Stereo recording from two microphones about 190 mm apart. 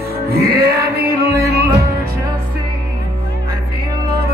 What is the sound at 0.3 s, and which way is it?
Music, 55° right (ahead or behind).